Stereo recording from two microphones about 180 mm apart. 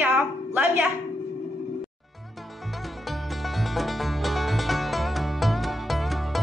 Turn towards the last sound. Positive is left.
turn(degrees=0)  # may be behind; listen again after turning